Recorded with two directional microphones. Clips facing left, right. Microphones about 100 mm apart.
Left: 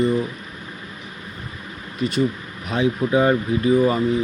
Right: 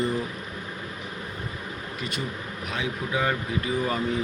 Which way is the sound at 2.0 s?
25° left (ahead or behind).